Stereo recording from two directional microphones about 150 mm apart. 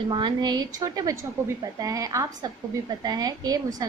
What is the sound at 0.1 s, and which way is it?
A woman's voice, 30° right (ahead or behind).